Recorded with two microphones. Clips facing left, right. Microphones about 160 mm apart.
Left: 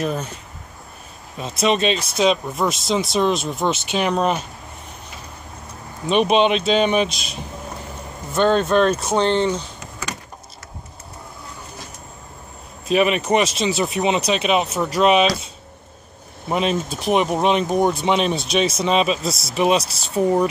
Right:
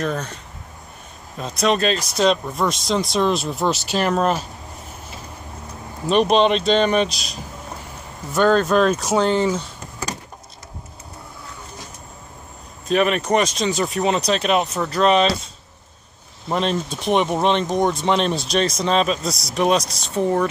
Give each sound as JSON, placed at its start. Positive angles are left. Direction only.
{"t": 0.0, "sound": "speech", "side_deg": 5}
{"t": 1.4, "sound": "speech", "side_deg": 0}
{"t": 6.0, "sound": "speech", "side_deg": 0}
{"t": 9.8, "sound": "power windows", "side_deg": -35}
{"t": 12.8, "sound": "speech", "side_deg": 5}
{"t": 16.4, "sound": "speech", "side_deg": 5}